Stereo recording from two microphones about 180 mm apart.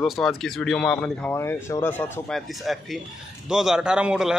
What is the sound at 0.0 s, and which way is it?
Speech, 5° left (ahead or behind).